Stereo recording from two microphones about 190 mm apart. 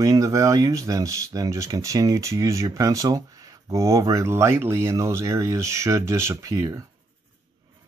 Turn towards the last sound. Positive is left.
turn(degrees=-20)  # may be behind; listen again after turning